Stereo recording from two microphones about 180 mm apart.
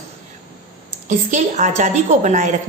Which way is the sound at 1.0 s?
45° right (ahead or behind).